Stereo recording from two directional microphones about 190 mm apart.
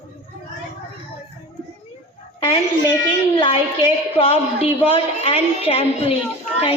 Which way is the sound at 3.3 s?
25° left (ahead or behind).